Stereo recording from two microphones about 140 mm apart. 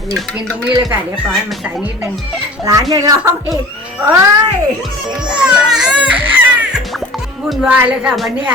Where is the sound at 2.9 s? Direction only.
30° right (ahead or behind).